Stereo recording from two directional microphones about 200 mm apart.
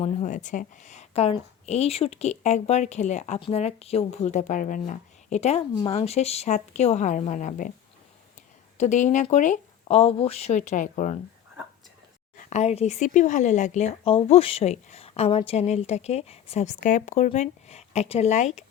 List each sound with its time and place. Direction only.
0.0 s a woman's voice: 40° left (ahead or behind)
8.8 s a woman's voice: 35° left (ahead or behind)
12.4 s a woman's voice: 35° left (ahead or behind)